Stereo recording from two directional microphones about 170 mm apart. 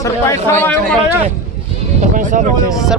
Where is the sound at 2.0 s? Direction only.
50° right (ahead or behind).